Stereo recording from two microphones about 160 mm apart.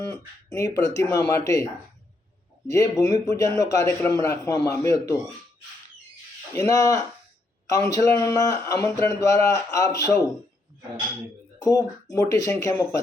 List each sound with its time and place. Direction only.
0.0 s speech: 20° left (ahead or behind)
2.6 s speech: 20° left (ahead or behind)
6.5 s speech: 20° left (ahead or behind)
11.6 s speech: 20° left (ahead or behind)